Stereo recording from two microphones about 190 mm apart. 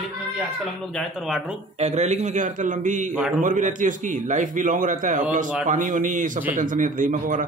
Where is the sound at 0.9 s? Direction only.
Centre (ahead or behind).